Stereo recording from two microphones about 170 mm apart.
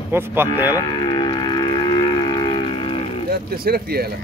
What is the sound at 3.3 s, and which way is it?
Speech, 60° right (ahead or behind).